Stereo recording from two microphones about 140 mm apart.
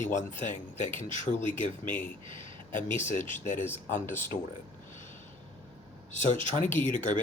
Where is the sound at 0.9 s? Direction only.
40° right (ahead or behind).